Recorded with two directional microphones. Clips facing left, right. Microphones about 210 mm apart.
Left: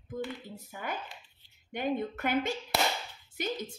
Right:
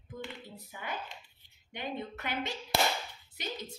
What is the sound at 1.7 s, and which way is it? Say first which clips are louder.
A woman's voice: left 7 dB; 50° left (ahead or behind).